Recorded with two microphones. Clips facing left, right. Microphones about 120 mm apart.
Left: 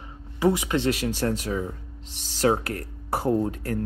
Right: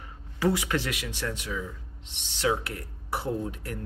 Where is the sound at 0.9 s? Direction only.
40° left (ahead or behind).